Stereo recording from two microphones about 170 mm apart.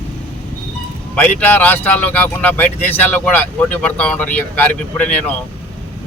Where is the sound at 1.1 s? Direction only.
10° left (ahead or behind).